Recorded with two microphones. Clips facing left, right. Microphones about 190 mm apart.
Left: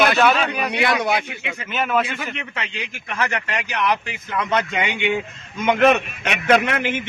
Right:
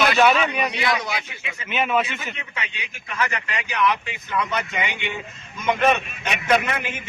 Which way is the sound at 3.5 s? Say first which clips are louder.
Right 2 dB; 80° left.